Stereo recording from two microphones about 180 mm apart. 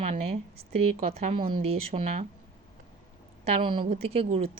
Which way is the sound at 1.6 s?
45° right (ahead or behind).